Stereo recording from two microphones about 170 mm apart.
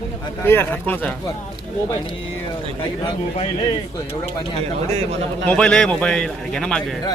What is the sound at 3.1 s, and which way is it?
Speech, 35° left (ahead or behind).